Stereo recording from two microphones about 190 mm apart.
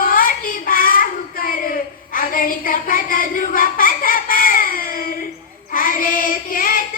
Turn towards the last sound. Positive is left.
turn(degrees=50)  # may be behind; listen again after turning